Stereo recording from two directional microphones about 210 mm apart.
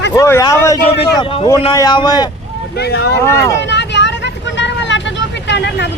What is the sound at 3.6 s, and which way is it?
Vehicle, 55° left (ahead or behind).